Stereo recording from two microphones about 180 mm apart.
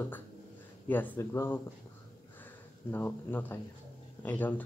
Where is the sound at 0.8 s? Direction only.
10° left (ahead or behind).